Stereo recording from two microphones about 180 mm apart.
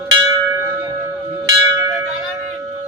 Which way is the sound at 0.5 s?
10° right (ahead or behind).